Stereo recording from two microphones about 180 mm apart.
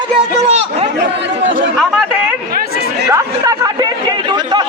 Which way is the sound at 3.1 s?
20° right (ahead or behind).